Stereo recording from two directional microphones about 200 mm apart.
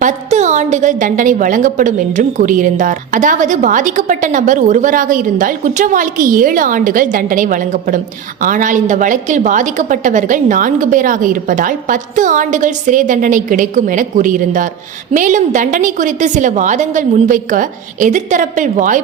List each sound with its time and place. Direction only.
0.0 s a woman's voice: 35° right (ahead or behind)